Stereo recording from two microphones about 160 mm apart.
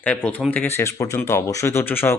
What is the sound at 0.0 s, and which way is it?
Speech, 10° left (ahead or behind).